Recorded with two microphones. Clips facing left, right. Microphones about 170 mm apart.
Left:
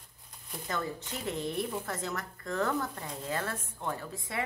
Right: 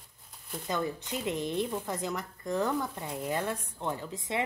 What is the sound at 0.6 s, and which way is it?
Speech, 15° right (ahead or behind).